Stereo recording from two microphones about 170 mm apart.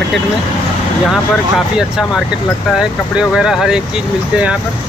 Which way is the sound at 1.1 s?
5° right (ahead or behind).